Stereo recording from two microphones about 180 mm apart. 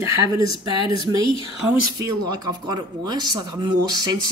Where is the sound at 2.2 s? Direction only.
25° right (ahead or behind).